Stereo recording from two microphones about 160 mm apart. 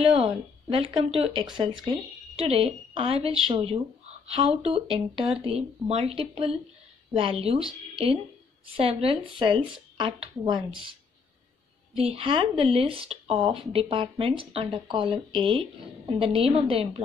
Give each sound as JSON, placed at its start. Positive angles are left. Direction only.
{"t": 0.1, "sound": "speech", "side_deg": -35}
{"t": 8.7, "sound": "speech", "side_deg": -35}
{"t": 11.9, "sound": "speech", "side_deg": -40}